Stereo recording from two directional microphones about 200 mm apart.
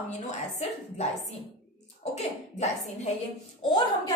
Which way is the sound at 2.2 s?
35° left (ahead or behind).